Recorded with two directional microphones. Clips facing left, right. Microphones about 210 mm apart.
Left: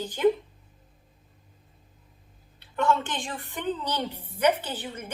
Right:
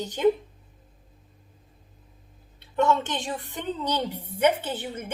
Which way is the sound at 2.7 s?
20° right (ahead or behind).